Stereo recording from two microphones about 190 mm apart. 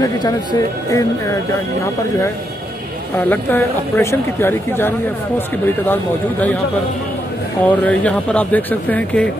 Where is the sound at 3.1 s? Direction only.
10° left (ahead or behind).